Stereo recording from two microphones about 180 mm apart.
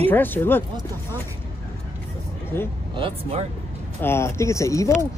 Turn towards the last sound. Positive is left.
turn(degrees=15)  # may be behind; listen again after turning